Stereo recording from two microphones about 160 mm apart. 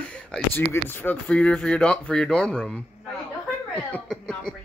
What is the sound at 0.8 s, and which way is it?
Speech, 10° left (ahead or behind).